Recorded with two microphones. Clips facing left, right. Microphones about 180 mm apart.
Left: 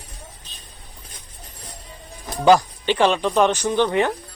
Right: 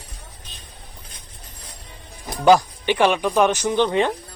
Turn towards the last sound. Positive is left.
turn(degrees=-20)  # may be behind; listen again after turning